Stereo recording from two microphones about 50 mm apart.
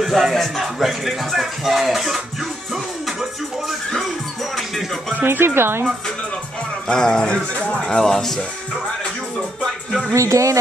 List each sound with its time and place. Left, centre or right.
0.0 s speech: centre
2.7 s music: centre
5.2 s speech: right
6.9 s speech: centre
7.9 s speech: centre
10.1 s speech: right